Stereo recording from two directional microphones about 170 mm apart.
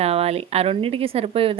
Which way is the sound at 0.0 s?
35° right (ahead or behind).